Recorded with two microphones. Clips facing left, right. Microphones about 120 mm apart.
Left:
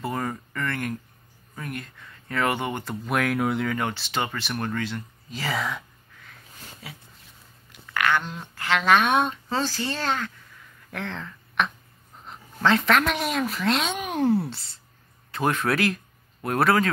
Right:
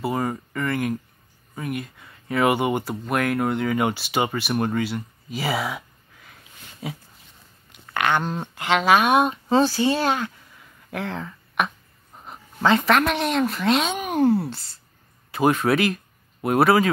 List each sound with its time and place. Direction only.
0.0 s a sound: 10° right (ahead or behind)
0.3 s speech: 10° right (ahead or behind)
3.7 s speech: 10° right (ahead or behind)
6.8 s speech: 20° right (ahead or behind)
7.9 s a sound: 20° right (ahead or behind)
8.2 s speech: 45° right (ahead or behind)
8.5 s a woman's voice: 15° right (ahead or behind)